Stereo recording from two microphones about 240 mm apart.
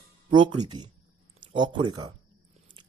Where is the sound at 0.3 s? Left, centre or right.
Centre.